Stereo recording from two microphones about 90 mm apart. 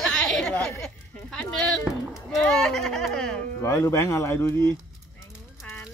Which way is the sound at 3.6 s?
35° left (ahead or behind).